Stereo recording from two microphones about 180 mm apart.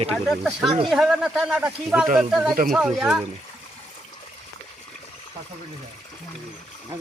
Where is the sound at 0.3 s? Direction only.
Centre (ahead or behind).